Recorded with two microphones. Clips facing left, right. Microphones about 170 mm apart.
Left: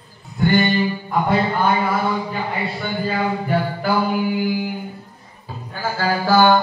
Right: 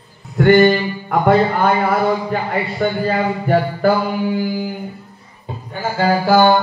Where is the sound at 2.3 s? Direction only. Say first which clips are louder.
Right 4 dB; 55° right (ahead or behind).